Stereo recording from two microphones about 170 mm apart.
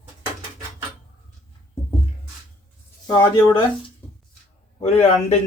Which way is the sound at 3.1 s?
30° left (ahead or behind).